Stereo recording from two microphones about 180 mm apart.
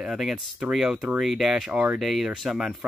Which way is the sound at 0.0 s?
Centre (ahead or behind).